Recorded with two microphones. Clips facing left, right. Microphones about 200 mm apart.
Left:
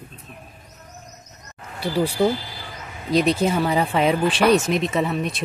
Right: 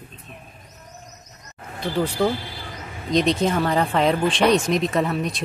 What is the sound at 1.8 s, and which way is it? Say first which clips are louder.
Speech: left 2 dB; 10° left (ahead or behind).